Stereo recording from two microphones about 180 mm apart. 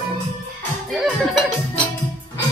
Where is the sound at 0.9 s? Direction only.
Centre (ahead or behind).